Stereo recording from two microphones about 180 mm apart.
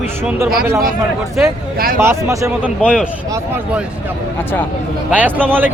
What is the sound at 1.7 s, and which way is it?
Speech, 55° right (ahead or behind).